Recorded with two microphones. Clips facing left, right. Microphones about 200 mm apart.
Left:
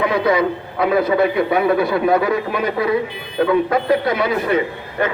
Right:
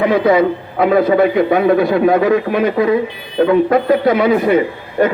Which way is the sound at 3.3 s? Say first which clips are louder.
Right 4 dB; 30° right (ahead or behind).